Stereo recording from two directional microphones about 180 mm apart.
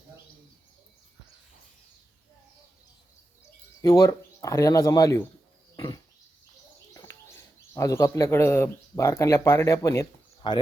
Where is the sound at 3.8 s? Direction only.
15° left (ahead or behind).